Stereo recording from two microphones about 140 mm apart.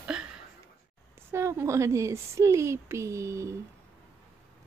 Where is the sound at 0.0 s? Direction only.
5° right (ahead or behind).